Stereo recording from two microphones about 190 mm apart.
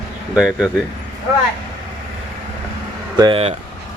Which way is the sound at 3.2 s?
25° right (ahead or behind).